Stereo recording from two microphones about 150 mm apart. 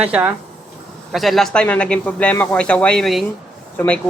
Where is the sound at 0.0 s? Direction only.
10° right (ahead or behind).